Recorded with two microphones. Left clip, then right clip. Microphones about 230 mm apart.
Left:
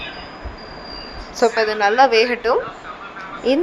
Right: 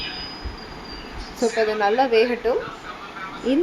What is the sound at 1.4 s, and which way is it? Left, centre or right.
A woman's voice, left.